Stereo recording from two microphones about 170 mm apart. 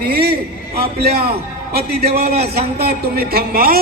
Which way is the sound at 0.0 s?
65° right (ahead or behind).